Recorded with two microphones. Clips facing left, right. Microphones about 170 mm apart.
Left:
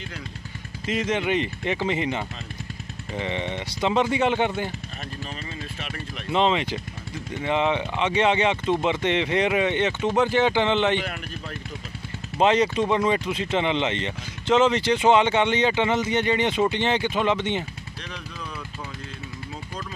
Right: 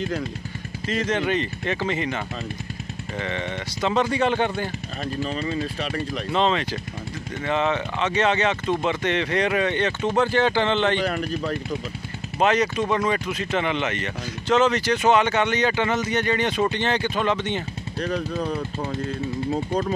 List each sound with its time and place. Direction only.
0.8 s speech: 15° left (ahead or behind)
5.2 s speech: 35° right (ahead or behind)
6.3 s speech: 20° left (ahead or behind)
11.0 s speech: 40° right (ahead or behind)
12.4 s speech: 25° left (ahead or behind)
18.0 s speech: 45° right (ahead or behind)